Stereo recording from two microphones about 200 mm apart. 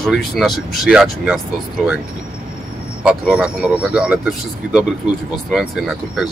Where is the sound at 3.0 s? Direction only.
5° right (ahead or behind).